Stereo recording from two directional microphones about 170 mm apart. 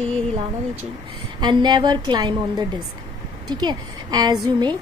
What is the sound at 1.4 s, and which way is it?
A woman's voice, 25° right (ahead or behind).